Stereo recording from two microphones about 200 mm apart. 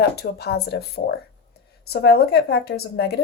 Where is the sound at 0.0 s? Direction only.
55° left (ahead or behind).